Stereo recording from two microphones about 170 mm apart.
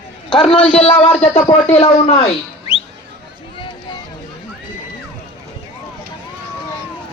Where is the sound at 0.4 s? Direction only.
35° left (ahead or behind).